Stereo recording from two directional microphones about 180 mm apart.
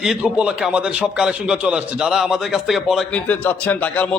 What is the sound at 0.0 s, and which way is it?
A man's voice, 5° right (ahead or behind).